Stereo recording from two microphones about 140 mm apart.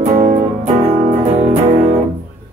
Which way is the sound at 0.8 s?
50° right (ahead or behind).